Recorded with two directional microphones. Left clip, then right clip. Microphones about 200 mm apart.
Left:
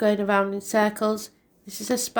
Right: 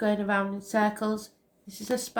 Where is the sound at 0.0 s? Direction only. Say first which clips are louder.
Left 6 dB; 45° left (ahead or behind).